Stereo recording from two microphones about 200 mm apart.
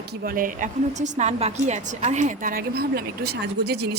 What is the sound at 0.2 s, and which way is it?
A woman's voice, 45° right (ahead or behind).